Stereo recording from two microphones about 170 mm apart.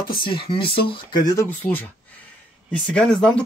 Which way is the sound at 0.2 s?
30° left (ahead or behind).